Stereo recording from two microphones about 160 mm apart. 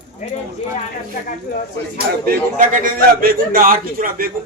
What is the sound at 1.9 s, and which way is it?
A man's voice, 60° right (ahead or behind).